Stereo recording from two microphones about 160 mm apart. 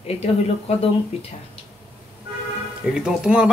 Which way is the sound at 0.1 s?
40° left (ahead or behind).